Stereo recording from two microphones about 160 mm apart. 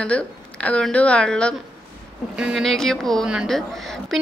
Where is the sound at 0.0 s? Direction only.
10° left (ahead or behind).